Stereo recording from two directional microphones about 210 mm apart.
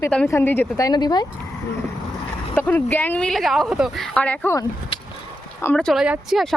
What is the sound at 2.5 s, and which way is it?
Speech, 10° left (ahead or behind).